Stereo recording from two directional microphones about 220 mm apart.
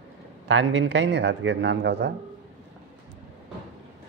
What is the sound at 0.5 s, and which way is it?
Speech, 55° right (ahead or behind).